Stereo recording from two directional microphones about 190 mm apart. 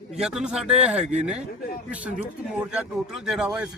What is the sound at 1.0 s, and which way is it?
Speech, 35° right (ahead or behind).